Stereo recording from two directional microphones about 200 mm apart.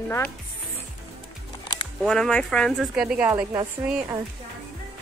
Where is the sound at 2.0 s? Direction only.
5° left (ahead or behind).